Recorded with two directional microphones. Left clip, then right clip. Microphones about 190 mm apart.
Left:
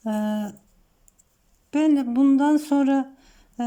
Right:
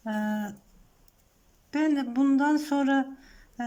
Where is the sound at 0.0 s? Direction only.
15° left (ahead or behind).